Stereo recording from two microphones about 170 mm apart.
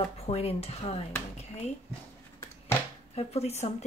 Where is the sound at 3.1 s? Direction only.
40° left (ahead or behind).